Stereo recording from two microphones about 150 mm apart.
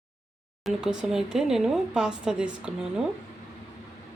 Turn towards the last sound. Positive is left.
turn(degrees=-5)  # may be behind; listen again after turning